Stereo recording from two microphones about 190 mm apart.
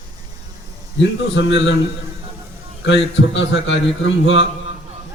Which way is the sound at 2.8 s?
70° left (ahead or behind).